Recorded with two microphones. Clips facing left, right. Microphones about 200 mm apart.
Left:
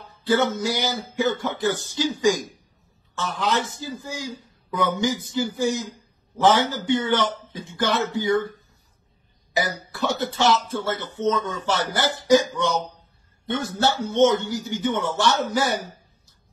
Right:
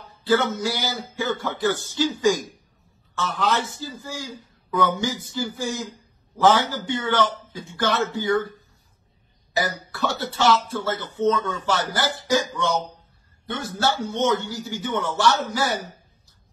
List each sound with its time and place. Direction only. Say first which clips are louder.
0.6 s speech: left 2 dB; 20° left (ahead or behind)
9.8 s speech: left 2 dB; 20° left (ahead or behind)